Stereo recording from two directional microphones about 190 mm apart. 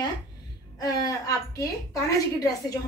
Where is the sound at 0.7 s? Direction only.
20° left (ahead or behind).